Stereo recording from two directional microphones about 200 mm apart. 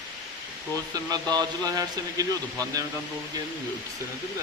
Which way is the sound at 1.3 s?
20° right (ahead or behind).